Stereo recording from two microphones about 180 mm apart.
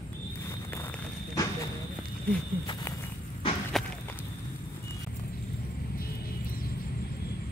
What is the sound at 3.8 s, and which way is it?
Walk, centre (ahead or behind).